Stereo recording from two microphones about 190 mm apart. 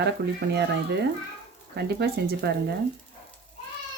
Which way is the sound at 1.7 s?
60° right (ahead or behind).